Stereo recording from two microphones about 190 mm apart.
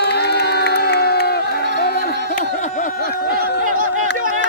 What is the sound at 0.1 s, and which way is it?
Crowd, 60° left (ahead or behind).